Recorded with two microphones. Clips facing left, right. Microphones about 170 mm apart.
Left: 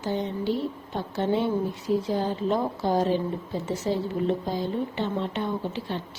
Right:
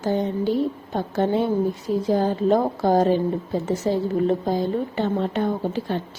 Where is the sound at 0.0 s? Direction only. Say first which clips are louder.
Right 5 dB; 45° right (ahead or behind).